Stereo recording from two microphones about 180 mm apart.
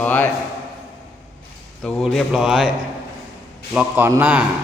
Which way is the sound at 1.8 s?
Centre (ahead or behind).